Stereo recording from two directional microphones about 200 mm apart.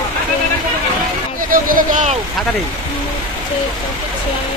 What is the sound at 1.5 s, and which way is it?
Speech, 40° right (ahead or behind).